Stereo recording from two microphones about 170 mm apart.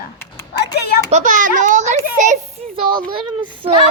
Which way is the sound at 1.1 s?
50° right (ahead or behind).